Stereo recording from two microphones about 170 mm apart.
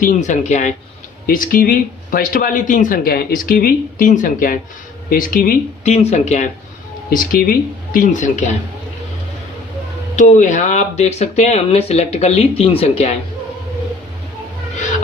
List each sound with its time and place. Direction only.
0.0 s speech: 45° left (ahead or behind)
6.0 s speech: 40° left (ahead or behind)
7.1 s speech: 55° left (ahead or behind)
10.1 s speech: 45° left (ahead or behind)